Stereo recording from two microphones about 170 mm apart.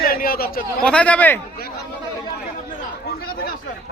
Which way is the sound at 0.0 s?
60° left (ahead or behind).